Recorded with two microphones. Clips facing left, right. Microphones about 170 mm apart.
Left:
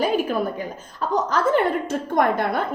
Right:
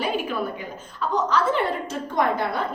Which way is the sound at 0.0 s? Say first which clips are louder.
Left 5 dB; 45° left (ahead or behind).